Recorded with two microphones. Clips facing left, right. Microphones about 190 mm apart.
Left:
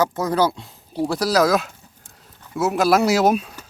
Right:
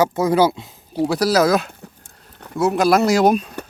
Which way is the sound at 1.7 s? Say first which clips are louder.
Right 7 dB; 60° right (ahead or behind).